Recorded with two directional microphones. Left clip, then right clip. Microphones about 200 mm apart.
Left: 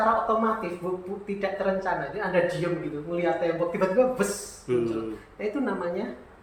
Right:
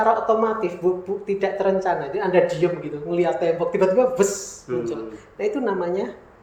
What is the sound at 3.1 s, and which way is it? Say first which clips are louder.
A woman's voice: right 6 dB; 50° right (ahead or behind).